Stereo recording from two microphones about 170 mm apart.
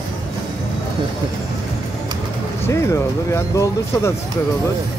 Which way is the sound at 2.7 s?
15° left (ahead or behind).